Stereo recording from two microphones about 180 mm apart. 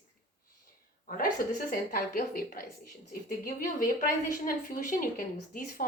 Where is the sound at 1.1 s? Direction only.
50° left (ahead or behind).